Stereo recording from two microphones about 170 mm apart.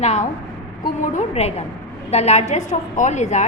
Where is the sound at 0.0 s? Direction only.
40° left (ahead or behind).